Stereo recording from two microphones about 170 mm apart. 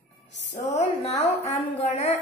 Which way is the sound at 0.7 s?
40° left (ahead or behind).